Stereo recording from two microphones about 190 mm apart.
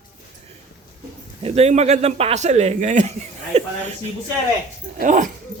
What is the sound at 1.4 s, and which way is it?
A man's voice, 35° right (ahead or behind).